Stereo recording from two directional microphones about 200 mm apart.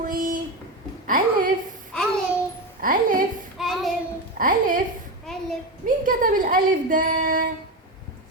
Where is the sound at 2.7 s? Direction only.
45° right (ahead or behind).